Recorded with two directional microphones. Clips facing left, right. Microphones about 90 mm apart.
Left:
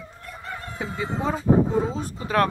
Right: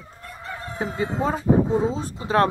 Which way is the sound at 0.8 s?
35° right (ahead or behind).